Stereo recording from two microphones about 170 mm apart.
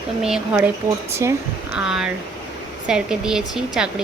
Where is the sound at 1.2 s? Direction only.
15° right (ahead or behind).